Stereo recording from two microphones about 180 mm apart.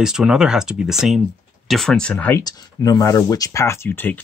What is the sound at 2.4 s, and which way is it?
Speech, 20° left (ahead or behind).